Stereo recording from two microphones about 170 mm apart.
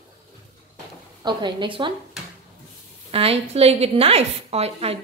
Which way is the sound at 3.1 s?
35° right (ahead or behind).